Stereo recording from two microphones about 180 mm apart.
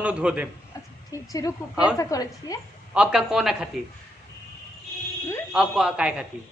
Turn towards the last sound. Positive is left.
turn(degrees=-5)  # may be behind; listen again after turning